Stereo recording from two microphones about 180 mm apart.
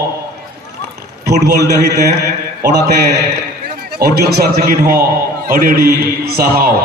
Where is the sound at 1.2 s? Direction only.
60° right (ahead or behind).